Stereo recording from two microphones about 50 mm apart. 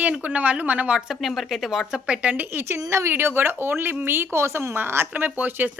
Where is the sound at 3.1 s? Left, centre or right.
Right.